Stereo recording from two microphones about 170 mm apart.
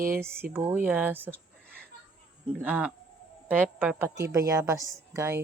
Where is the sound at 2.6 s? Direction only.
10° right (ahead or behind).